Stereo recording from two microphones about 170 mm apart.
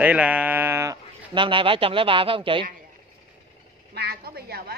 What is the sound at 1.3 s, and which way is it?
Speech, 30° right (ahead or behind).